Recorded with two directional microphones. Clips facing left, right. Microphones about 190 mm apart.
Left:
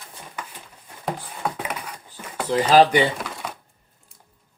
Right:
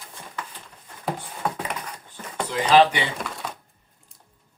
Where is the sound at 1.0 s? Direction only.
5° left (ahead or behind).